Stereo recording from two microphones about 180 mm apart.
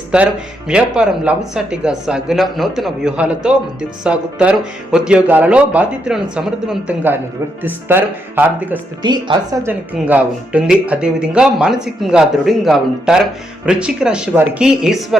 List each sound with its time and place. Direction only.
0.1 s speech: 5° right (ahead or behind)
9.0 s speech: 25° right (ahead or behind)
9.6 s speech: 10° right (ahead or behind)